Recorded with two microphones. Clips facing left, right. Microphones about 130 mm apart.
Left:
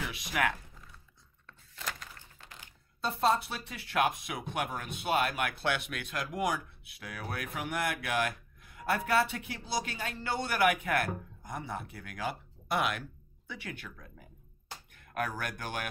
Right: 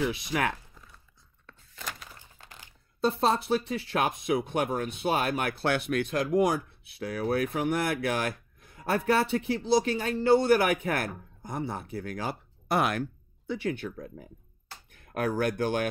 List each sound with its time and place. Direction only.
0.1 s speech: 30° right (ahead or behind)
3.1 s speech: 25° right (ahead or behind)
13.5 s speech: 30° right (ahead or behind)
15.1 s speech: 30° right (ahead or behind)